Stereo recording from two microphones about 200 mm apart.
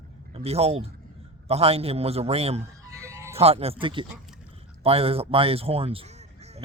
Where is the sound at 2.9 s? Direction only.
15° right (ahead or behind).